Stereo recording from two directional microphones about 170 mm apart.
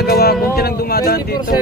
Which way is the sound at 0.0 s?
70° left (ahead or behind).